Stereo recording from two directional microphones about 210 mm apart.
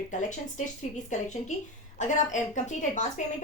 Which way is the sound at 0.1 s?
35° left (ahead or behind).